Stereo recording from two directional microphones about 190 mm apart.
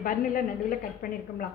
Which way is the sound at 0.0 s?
50° left (ahead or behind).